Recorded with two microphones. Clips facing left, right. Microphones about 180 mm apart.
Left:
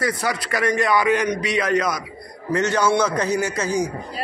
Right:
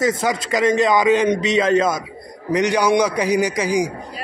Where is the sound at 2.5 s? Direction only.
15° right (ahead or behind).